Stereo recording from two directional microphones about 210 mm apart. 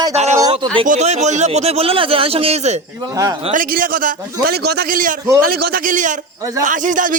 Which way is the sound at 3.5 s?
40° right (ahead or behind).